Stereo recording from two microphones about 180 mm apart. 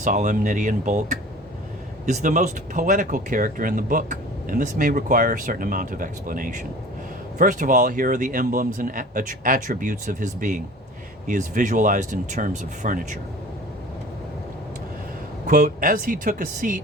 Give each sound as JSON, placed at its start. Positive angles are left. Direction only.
{"t": 0.0, "sound": "speech", "side_deg": -45}
{"t": 15.4, "sound": "speech", "side_deg": -50}